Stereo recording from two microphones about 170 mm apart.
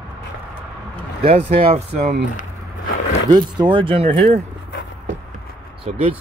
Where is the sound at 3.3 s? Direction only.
25° right (ahead or behind).